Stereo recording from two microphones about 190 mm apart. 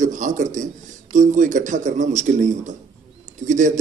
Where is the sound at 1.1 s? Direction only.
40° right (ahead or behind).